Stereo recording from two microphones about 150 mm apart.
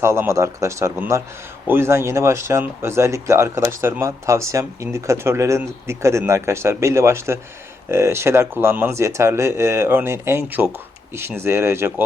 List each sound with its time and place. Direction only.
0.0 s a man's voice: 15° right (ahead or behind)